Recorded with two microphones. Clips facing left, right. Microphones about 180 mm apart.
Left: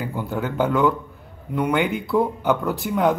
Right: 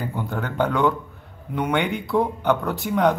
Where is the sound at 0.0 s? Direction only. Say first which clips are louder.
Left 2 dB; 5° left (ahead or behind).